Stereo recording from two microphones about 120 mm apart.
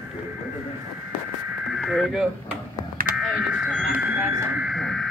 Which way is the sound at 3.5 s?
5° right (ahead or behind).